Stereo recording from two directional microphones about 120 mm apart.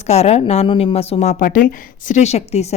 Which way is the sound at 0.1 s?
60° left (ahead or behind).